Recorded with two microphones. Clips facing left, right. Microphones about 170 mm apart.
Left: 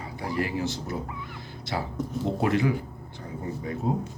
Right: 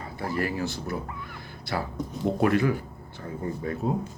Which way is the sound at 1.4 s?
20° left (ahead or behind).